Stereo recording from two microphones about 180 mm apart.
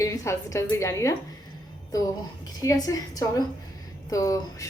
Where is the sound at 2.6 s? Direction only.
20° left (ahead or behind).